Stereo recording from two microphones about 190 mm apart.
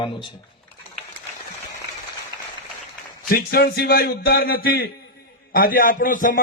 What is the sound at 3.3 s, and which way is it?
A man's voice, 55° left (ahead or behind).